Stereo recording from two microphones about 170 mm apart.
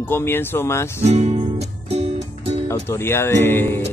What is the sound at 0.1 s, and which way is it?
Speech, 15° left (ahead or behind).